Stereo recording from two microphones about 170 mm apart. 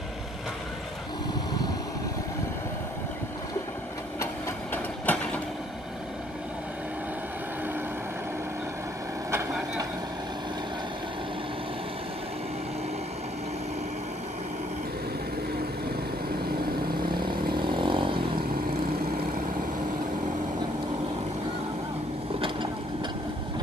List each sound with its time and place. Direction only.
5.1 s vehicle: 10° left (ahead or behind)
17.6 s vehicle: 30° right (ahead or behind)